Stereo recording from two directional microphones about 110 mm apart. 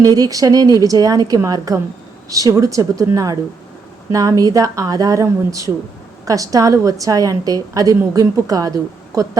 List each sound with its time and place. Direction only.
0.0 s speech: 35° right (ahead or behind)